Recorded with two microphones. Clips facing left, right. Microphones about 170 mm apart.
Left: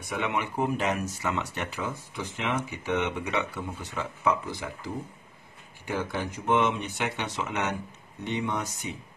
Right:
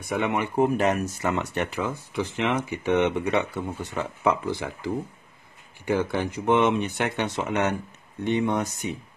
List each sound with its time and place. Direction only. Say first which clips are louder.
0.1 s speech: right 5 dB; 50° right (ahead or behind)